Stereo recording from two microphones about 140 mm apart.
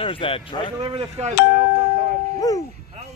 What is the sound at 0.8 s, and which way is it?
Speech, 35° right (ahead or behind).